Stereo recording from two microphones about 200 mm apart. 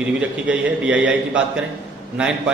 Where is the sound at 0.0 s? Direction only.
5° right (ahead or behind).